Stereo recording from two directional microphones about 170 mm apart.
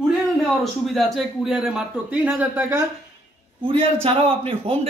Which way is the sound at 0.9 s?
Centre (ahead or behind).